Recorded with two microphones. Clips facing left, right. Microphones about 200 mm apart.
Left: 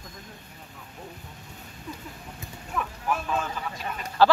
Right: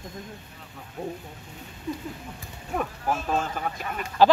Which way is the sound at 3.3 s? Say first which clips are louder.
Right 3 dB; 50° right (ahead or behind).